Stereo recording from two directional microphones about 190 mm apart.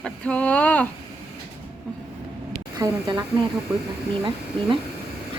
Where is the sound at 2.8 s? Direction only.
20° right (ahead or behind).